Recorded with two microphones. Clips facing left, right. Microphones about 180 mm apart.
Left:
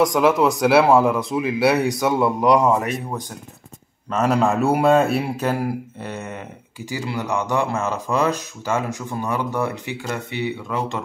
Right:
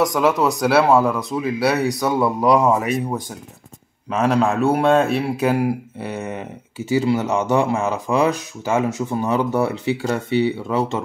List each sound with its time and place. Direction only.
0.0 s speech: centre (ahead or behind)
4.1 s speech: centre (ahead or behind)
5.4 s speech: 10° right (ahead or behind)
10.0 s speech: 30° right (ahead or behind)